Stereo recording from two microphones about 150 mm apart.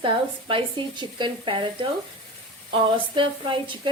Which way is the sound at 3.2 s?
35° right (ahead or behind).